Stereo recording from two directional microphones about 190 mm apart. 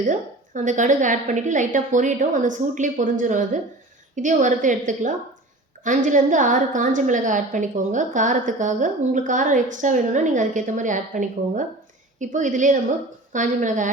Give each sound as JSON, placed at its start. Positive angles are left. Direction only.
{"t": 0.1, "sound": "a woman's voice", "side_deg": -40}